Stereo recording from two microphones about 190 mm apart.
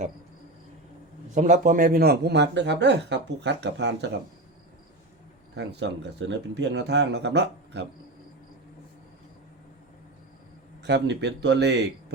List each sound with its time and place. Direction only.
1.3 s speech: 40° right (ahead or behind); by 4.1 s 65° right (ahead or behind)
5.5 s speech: 65° right (ahead or behind)
10.8 s speech: 65° right (ahead or behind)